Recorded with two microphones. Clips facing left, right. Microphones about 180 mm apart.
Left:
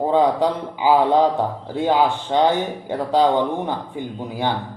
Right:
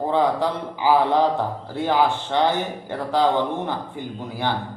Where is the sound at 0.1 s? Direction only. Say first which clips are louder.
Left 3 dB; 15° left (ahead or behind).